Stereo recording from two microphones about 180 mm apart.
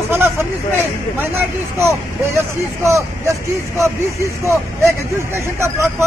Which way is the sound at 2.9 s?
15° right (ahead or behind).